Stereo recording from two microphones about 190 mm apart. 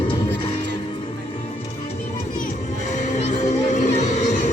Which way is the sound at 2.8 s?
40° left (ahead or behind).